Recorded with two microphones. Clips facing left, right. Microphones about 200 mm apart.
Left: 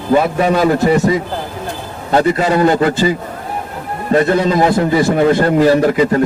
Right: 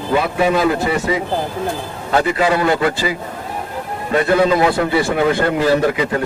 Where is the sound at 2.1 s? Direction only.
40° left (ahead or behind).